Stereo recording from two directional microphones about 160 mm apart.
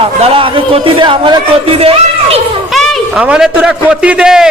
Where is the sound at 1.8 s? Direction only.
35° right (ahead or behind).